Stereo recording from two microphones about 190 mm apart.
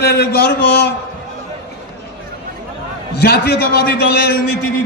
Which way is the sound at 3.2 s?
55° left (ahead or behind).